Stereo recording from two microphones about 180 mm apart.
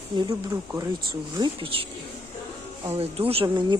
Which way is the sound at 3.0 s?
35° right (ahead or behind).